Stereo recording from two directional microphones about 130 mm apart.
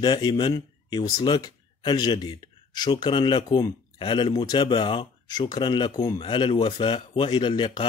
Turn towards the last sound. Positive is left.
turn(degrees=35)  # may be behind; listen again after turning